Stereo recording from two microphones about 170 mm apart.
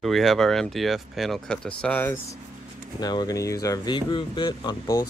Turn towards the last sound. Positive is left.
turn(degrees=20)  # may be behind; listen again after turning